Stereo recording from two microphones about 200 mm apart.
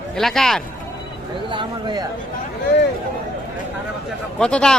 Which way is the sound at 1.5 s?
25° right (ahead or behind).